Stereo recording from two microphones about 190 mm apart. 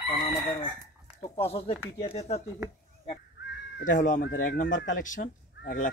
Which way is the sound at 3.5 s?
70° left (ahead or behind).